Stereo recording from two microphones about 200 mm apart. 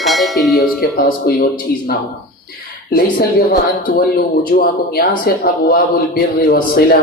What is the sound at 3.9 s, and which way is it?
A man's voice, 45° left (ahead or behind).